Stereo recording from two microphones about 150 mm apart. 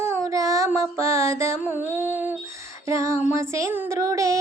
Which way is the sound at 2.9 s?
20° right (ahead or behind).